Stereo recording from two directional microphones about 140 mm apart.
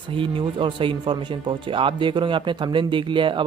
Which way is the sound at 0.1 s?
40° right (ahead or behind).